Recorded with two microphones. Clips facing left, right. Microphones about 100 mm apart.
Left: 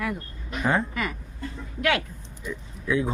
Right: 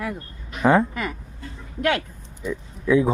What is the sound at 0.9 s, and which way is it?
Speech, 30° right (ahead or behind).